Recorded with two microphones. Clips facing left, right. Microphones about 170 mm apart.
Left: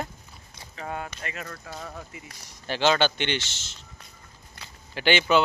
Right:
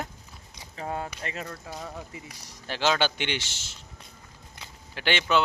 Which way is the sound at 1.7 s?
15° right (ahead or behind).